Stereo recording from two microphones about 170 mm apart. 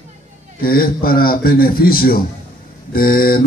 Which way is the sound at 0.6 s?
60° left (ahead or behind).